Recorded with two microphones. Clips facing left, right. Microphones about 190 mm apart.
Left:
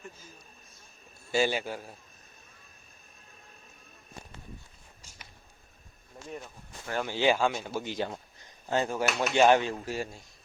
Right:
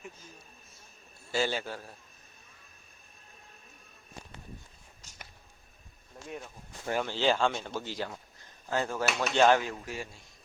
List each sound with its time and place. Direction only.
1.3 s speech: 15° left (ahead or behind)
6.2 s speech: 5° right (ahead or behind)
7.0 s speech: 15° left (ahead or behind)
9.6 s speech: 30° left (ahead or behind)